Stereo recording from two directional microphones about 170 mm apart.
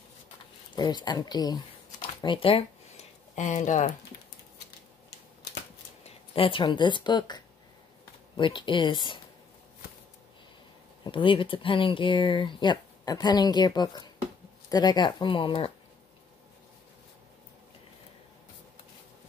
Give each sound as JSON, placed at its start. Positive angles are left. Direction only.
{"t": 0.7, "sound": "speech", "side_deg": 25}
{"t": 2.2, "sound": "a sound", "side_deg": 30}
{"t": 6.0, "sound": "speech", "side_deg": 30}
{"t": 11.1, "sound": "speech", "side_deg": 30}